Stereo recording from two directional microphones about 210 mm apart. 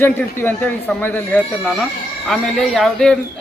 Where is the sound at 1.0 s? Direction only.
10° left (ahead or behind).